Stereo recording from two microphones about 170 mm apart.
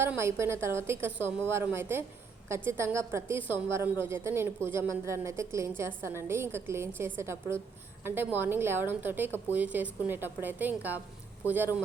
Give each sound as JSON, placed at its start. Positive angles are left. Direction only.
{"t": 0.0, "sound": "a woman's voice", "side_deg": -15}